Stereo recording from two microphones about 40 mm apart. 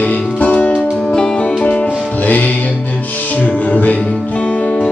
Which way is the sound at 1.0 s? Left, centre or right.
Centre.